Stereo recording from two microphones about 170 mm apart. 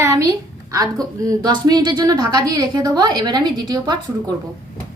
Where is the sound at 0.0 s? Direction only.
20° right (ahead or behind).